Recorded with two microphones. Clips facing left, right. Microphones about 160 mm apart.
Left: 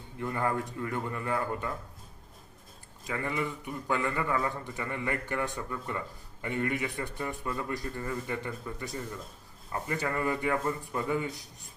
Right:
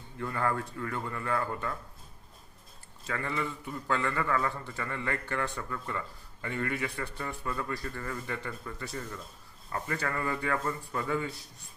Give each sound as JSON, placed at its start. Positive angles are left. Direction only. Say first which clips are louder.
{"t": 0.2, "sound": "a man's voice", "louder": "left 1 dB", "side_deg": 15}
{"t": 3.0, "sound": "a man's voice", "louder": "left 1 dB", "side_deg": 15}